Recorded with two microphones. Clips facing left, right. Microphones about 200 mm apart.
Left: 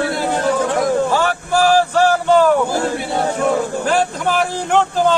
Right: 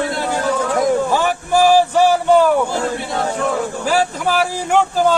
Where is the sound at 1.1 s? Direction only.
15° right (ahead or behind).